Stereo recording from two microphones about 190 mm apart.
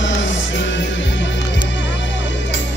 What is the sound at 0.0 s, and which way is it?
Music, 75° left (ahead or behind).